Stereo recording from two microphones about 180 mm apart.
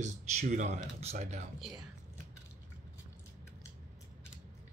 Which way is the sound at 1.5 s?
Centre (ahead or behind).